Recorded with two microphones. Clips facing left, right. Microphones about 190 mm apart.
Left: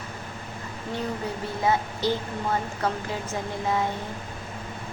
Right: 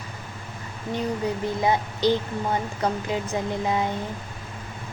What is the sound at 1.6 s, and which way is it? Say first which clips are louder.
A woman's voice: right 2 dB; 20° right (ahead or behind).